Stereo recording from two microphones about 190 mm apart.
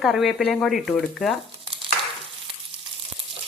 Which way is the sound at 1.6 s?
30° right (ahead or behind).